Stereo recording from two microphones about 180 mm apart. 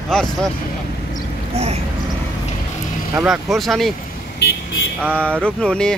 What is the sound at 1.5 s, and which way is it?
Speech, 35° right (ahead or behind).